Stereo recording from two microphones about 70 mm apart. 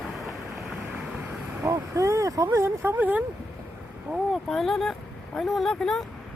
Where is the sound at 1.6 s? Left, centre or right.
Right.